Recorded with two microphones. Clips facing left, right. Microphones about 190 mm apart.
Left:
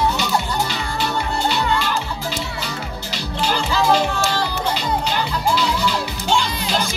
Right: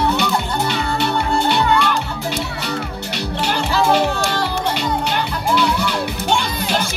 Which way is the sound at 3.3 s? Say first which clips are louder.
Right 1 dB; 60° right (ahead or behind).